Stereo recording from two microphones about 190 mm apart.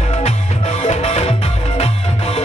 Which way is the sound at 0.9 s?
35° left (ahead or behind).